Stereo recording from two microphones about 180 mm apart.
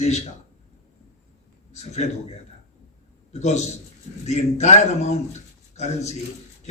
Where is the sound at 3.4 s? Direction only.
40° left (ahead or behind).